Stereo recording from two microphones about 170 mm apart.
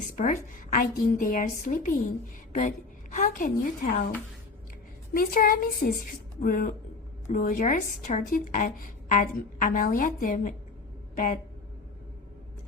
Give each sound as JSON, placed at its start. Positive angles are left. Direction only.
{"t": 0.2, "sound": "a woman's voice", "side_deg": 50}
{"t": 5.1, "sound": "a woman's voice", "side_deg": 55}